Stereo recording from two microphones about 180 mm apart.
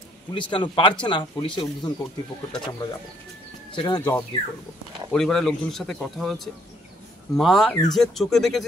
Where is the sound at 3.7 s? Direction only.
25° left (ahead or behind).